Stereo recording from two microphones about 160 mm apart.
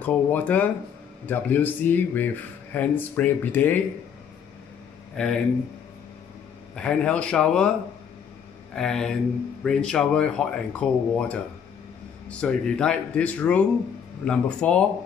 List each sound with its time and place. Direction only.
0.0 s speech: 10° left (ahead or behind)
5.2 s speech: 5° left (ahead or behind)
6.7 s speech: 5° left (ahead or behind)
8.7 s speech: 5° left (ahead or behind)